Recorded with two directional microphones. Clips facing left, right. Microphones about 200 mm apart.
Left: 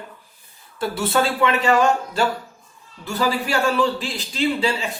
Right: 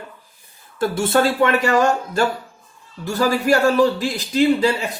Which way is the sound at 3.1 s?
45° right (ahead or behind).